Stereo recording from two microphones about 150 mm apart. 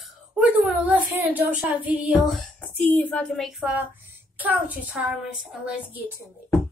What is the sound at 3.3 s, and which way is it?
Speech, centre (ahead or behind).